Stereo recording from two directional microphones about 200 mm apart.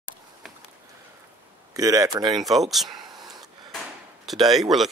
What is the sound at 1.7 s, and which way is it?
Speech, 15° right (ahead or behind).